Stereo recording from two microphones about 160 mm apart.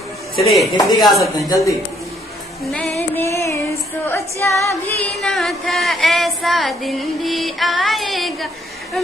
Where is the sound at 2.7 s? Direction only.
Centre (ahead or behind).